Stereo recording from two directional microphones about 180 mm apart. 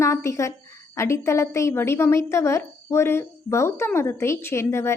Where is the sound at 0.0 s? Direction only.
15° left (ahead or behind).